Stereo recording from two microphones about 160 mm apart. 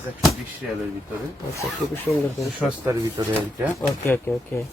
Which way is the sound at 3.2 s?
30° right (ahead or behind).